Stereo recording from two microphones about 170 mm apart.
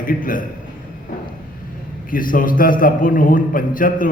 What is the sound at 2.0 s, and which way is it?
A man's voice, 55° left (ahead or behind).